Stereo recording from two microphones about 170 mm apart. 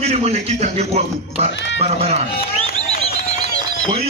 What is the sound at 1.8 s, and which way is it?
Speech, 40° right (ahead or behind).